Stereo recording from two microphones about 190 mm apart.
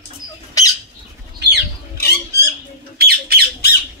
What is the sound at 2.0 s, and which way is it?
Squawk, 55° left (ahead or behind).